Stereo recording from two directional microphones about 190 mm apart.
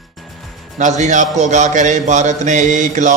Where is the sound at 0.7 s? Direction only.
40° right (ahead or behind).